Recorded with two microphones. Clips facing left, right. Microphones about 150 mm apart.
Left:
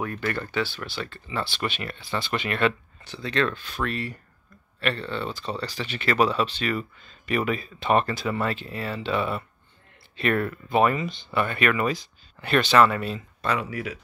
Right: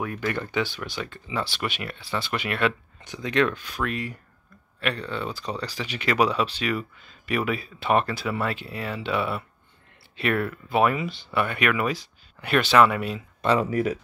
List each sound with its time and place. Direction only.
0.0 s speech: 10° right (ahead or behind)
13.6 s speech: 40° right (ahead or behind)